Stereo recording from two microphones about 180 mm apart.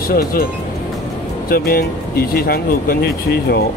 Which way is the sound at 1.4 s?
55° left (ahead or behind).